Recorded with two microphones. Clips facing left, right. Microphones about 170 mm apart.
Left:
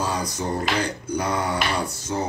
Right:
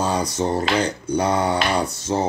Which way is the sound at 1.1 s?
25° right (ahead or behind).